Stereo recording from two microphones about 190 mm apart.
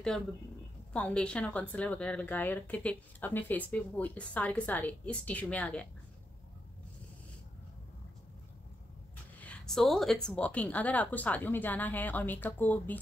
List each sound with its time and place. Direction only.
0.9 s speech: 5° left (ahead or behind)
9.4 s speech: 5° left (ahead or behind)